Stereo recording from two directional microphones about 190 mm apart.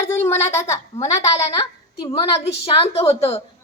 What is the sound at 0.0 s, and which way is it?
A woman's voice, 10° left (ahead or behind).